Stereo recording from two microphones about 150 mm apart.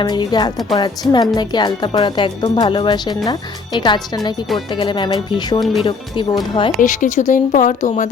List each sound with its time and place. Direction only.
0.0 s speech: 30° left (ahead or behind)
6.7 s speech: 60° left (ahead or behind)